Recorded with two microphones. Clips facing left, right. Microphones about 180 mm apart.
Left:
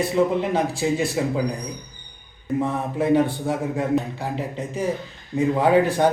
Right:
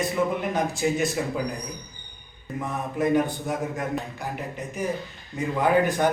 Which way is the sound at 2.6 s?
30° left (ahead or behind).